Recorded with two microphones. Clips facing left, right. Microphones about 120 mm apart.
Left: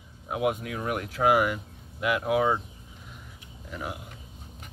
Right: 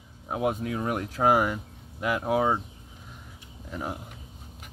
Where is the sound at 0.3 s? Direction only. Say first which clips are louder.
Even; 30° right (ahead or behind).